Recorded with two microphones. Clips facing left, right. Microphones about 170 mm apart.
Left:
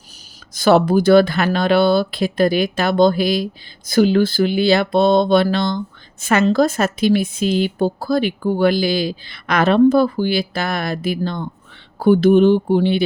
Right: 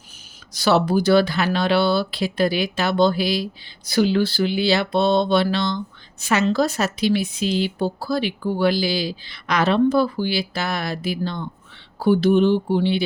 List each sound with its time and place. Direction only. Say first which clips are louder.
0.5 s speech: left 5 dB; 50° left (ahead or behind)